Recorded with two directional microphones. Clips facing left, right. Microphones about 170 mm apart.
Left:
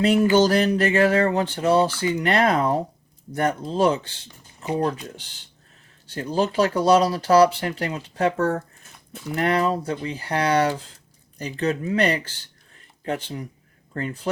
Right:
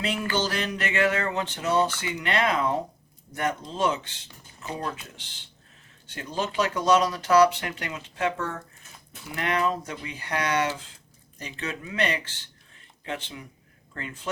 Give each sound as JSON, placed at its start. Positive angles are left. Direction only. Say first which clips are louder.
{"t": 0.0, "sound": "speech", "louder": "left 11 dB", "side_deg": 40}